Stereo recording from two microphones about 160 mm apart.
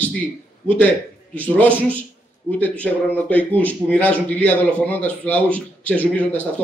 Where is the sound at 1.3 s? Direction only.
10° left (ahead or behind).